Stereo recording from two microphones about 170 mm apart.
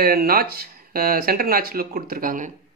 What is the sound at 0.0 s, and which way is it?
Speech, 65° right (ahead or behind).